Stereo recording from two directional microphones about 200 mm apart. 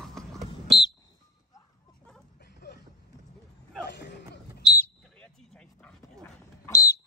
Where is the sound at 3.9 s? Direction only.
60° left (ahead or behind).